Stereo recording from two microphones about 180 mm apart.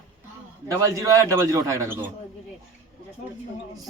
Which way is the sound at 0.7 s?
15° right (ahead or behind).